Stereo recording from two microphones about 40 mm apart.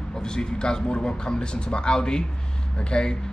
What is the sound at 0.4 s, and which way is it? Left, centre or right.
Speech, left.